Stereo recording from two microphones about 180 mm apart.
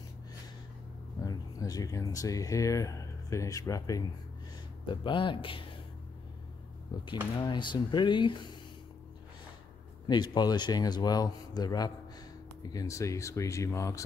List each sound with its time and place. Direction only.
1.2 s speech: 20° left (ahead or behind)
6.9 s speech: 25° left (ahead or behind)
10.0 s speech: 25° left (ahead or behind)